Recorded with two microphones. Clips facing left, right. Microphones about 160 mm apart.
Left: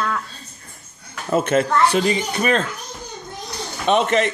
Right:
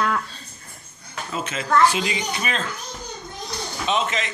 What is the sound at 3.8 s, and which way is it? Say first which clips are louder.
Speech: left 7 dB; 55° left (ahead or behind).